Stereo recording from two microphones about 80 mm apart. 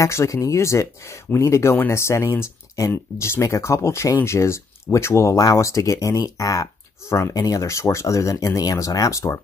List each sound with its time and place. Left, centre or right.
0.0 s speech: left